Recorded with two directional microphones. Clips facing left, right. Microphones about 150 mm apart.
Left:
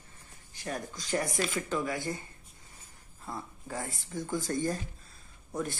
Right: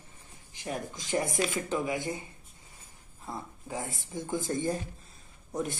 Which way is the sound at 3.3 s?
15° right (ahead or behind).